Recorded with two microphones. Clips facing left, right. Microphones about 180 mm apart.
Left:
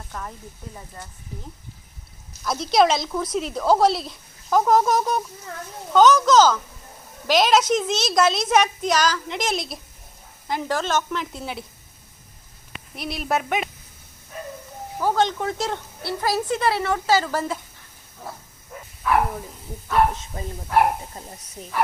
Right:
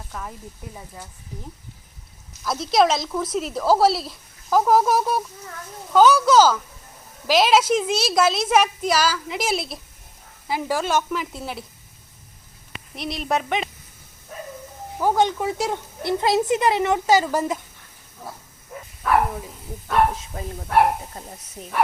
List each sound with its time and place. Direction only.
0.1 s speech: 5° right (ahead or behind)
2.4 s a woman's voice: centre (ahead or behind)
13.0 s speech: centre (ahead or behind)
15.0 s a woman's voice: 15° right (ahead or behind)
20.3 s speech: centre (ahead or behind)